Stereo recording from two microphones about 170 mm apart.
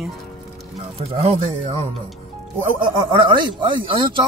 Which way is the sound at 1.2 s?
35° right (ahead or behind).